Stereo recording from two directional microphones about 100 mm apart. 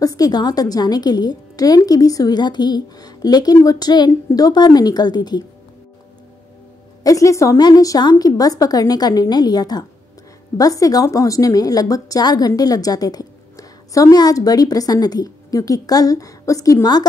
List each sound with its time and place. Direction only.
0.0 s a woman's voice: 40° left (ahead or behind)
7.0 s a woman's voice: 35° left (ahead or behind)